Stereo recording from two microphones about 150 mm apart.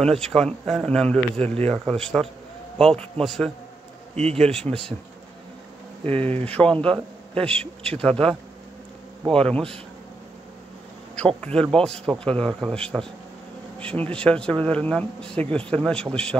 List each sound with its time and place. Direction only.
0.0 s a man's voice: 5° left (ahead or behind)
1.4 s speech: 45° right (ahead or behind)
1.7 s a man's voice: 5° left (ahead or behind)
6.0 s speech: 40° right (ahead or behind)
6.5 s a man's voice: 5° left (ahead or behind)
9.4 s a man's voice: 5° left (ahead or behind)
11.4 s a man's voice: 5° left (ahead or behind)